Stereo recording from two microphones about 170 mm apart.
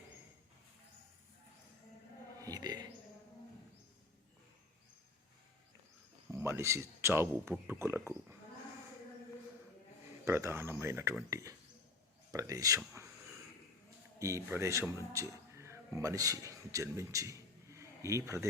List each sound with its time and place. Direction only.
2.4 s a sound: 20° right (ahead or behind)
6.3 s speech: 15° right (ahead or behind)
10.2 s speech: 15° right (ahead or behind)
14.2 s speech: 15° right (ahead or behind)